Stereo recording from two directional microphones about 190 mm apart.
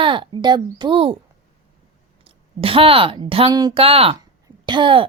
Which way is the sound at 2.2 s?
30° right (ahead or behind).